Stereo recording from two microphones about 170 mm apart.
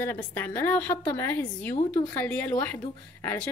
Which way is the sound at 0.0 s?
15° left (ahead or behind).